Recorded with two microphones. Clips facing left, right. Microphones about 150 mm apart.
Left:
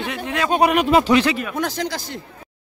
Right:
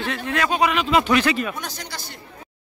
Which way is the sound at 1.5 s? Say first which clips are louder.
Left 10 dB; 90° left.